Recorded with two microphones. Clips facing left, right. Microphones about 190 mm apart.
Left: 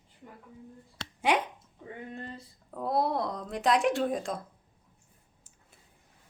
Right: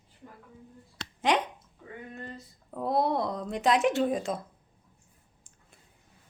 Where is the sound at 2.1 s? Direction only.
30° left (ahead or behind).